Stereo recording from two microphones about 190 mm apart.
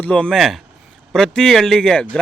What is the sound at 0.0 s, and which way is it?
A man's voice, 5° left (ahead or behind).